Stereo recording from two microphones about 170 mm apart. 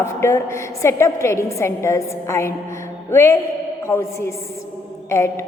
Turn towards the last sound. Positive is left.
turn(degrees=15)  # may be behind; listen again after turning